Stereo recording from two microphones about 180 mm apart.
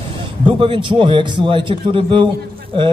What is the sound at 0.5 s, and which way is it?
Speech, 30° right (ahead or behind).